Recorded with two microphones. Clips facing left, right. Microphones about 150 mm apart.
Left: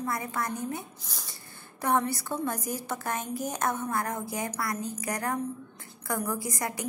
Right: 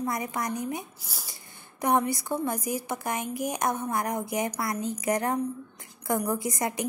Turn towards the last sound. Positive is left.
turn(degrees=-20)  # may be behind; listen again after turning